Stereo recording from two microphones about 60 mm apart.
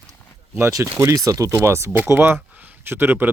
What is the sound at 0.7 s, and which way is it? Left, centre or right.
Speech, right.